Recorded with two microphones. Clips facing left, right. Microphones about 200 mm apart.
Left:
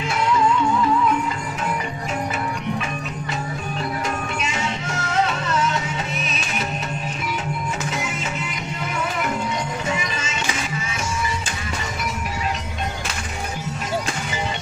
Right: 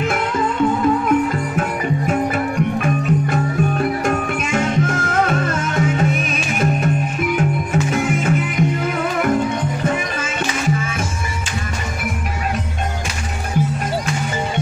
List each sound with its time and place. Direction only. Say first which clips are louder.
0.0 s music: right 1 dB; 50° right (ahead or behind)
9.8 s music: right 5 dB; 55° right (ahead or behind)